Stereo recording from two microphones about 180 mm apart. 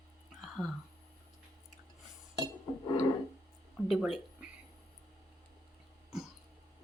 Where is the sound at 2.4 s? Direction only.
20° left (ahead or behind).